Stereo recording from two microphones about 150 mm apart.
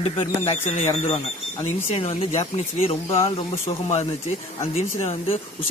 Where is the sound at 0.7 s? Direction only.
50° left (ahead or behind).